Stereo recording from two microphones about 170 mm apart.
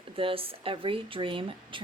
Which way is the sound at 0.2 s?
35° right (ahead or behind).